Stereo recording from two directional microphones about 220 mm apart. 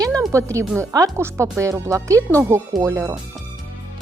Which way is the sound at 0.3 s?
15° right (ahead or behind).